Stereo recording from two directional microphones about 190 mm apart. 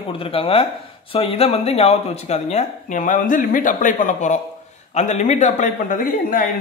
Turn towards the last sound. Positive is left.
turn(degrees=45)  # may be behind; listen again after turning